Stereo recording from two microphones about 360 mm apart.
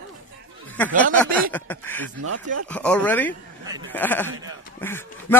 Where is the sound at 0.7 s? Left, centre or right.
Centre.